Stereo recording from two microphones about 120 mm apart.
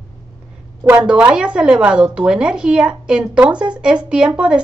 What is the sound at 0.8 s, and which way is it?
Speech, 15° right (ahead or behind).